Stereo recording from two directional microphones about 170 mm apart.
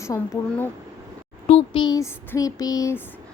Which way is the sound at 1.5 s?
30° left (ahead or behind).